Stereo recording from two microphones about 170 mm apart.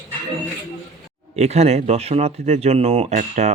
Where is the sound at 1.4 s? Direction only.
40° right (ahead or behind).